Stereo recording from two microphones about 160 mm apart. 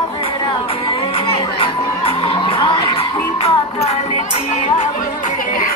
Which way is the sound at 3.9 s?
40° left (ahead or behind).